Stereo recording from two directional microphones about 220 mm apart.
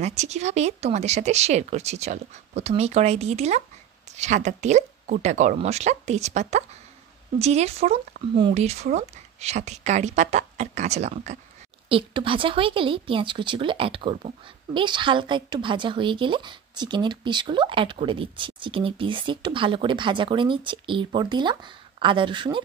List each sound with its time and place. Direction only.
0.0 s a woman's voice: 30° right (ahead or behind)